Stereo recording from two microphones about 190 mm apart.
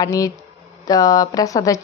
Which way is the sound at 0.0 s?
20° left (ahead or behind).